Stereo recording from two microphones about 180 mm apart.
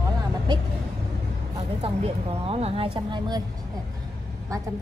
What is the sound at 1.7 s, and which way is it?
Speech, 35° right (ahead or behind).